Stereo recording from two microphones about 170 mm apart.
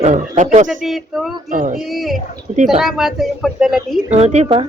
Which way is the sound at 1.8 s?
Centre (ahead or behind).